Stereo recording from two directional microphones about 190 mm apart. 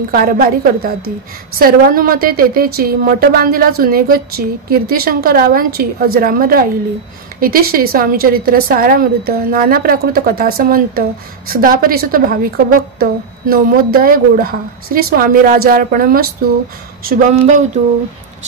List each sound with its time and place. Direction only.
0.1 s a woman's voice: 50° right (ahead or behind)